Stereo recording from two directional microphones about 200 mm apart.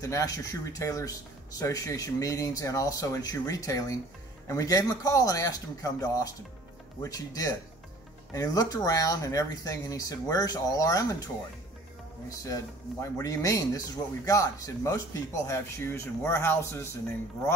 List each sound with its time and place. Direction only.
0.0 s speech: 15° left (ahead or behind)
12.3 s speech: 15° left (ahead or behind)